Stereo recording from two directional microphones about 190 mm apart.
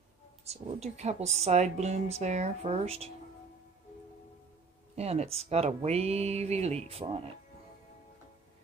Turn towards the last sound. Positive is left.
turn(degrees=-30)  # may be behind; listen again after turning